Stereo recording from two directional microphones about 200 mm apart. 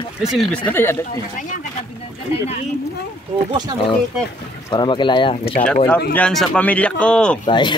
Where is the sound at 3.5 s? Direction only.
20° right (ahead or behind).